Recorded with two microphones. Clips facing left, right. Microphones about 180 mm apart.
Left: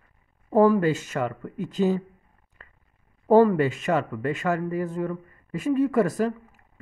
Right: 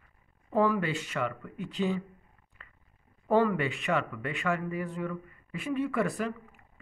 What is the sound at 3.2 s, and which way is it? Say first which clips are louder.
Speech: left 8 dB; 40° left (ahead or behind).